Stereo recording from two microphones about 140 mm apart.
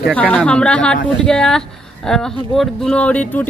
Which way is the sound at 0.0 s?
10° left (ahead or behind).